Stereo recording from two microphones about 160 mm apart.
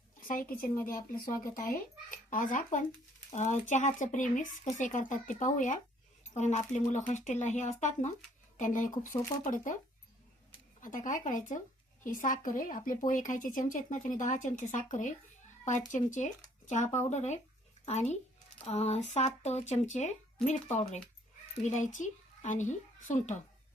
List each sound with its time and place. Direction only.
0.3 s a woman's voice: 65° left (ahead or behind)
10.8 s a woman's voice: 55° left (ahead or behind)
21.6 s a woman's voice: 50° left (ahead or behind)